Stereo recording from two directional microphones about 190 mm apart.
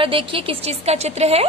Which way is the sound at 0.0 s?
30° right (ahead or behind).